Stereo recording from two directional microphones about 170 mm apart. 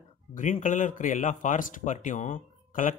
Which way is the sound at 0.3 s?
50° left (ahead or behind).